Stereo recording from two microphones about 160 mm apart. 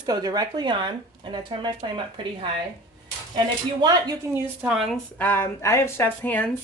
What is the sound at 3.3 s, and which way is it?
Speech, 25° right (ahead or behind).